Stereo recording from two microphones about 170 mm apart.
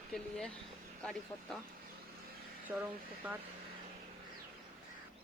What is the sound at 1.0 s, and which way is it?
Speech, 5° left (ahead or behind).